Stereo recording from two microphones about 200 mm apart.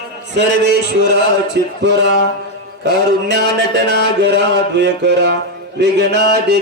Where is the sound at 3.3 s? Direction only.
60° right (ahead or behind).